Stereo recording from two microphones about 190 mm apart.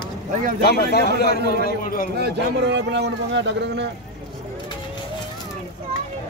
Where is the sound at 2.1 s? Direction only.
60° right (ahead or behind).